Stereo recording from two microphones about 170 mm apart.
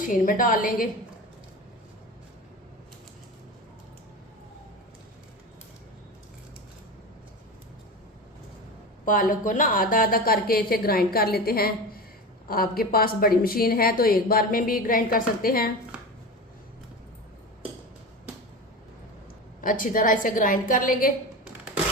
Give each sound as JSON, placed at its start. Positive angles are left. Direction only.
{"t": 0.0, "sound": "a woman's voice", "side_deg": 50}
{"t": 9.0, "sound": "a woman's voice", "side_deg": 50}
{"t": 19.6, "sound": "a woman's voice", "side_deg": 55}